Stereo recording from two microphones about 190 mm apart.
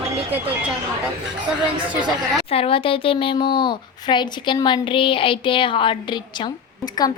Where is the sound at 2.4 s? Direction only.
30° left (ahead or behind).